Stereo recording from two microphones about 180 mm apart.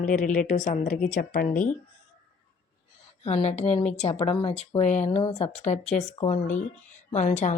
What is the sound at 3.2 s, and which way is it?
A woman's voice, 35° left (ahead or behind).